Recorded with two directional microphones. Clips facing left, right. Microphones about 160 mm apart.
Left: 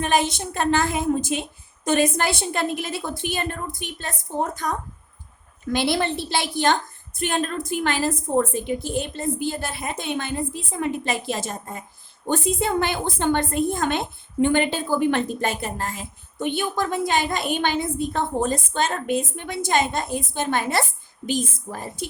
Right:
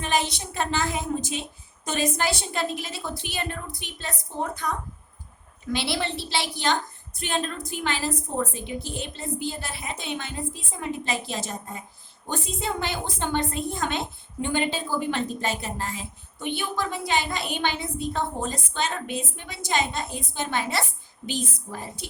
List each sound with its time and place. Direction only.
0.0 s a woman's voice: 50° left (ahead or behind)